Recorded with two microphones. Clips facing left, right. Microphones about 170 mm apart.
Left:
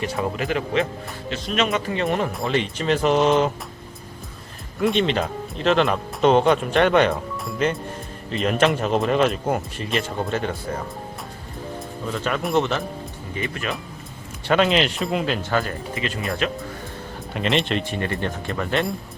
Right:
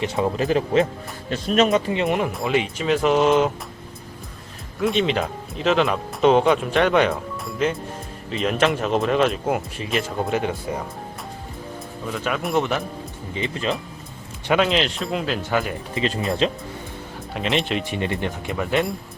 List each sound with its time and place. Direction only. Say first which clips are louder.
0.3 s speech: right 5 dB; 35° right (ahead or behind)
1.9 s speech: right 1 dB; 20° right (ahead or behind)
2.3 s speech: right 1 dB; 5° right (ahead or behind)
4.8 s speech: even; centre (ahead or behind)
12.0 s speech: even; 5° right (ahead or behind)
13.3 s speech: right 3 dB; 20° right (ahead or behind)
14.6 s speech: left 4 dB; centre (ahead or behind)
15.4 s speech: even; 15° right (ahead or behind)
16.0 s speech: right 5 dB; 25° right (ahead or behind)
17.3 s speech: left 1 dB; centre (ahead or behind)